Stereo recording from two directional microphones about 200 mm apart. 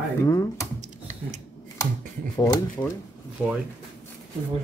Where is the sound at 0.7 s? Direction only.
35° right (ahead or behind).